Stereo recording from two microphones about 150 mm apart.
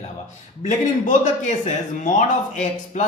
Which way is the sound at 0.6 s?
55° left (ahead or behind).